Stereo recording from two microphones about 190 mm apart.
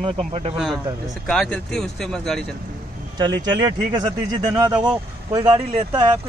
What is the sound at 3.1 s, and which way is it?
Speech, 20° right (ahead or behind).